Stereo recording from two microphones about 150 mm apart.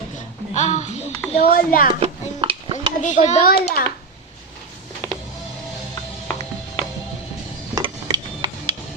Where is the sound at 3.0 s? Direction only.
55° left (ahead or behind).